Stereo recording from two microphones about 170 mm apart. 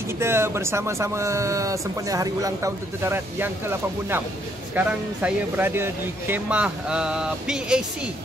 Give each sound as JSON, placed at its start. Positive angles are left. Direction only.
{"t": 0.2, "sound": "speech", "side_deg": -15}
{"t": 4.7, "sound": "speech", "side_deg": -10}